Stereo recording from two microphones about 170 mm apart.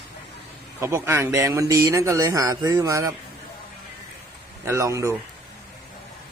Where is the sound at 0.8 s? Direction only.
15° right (ahead or behind).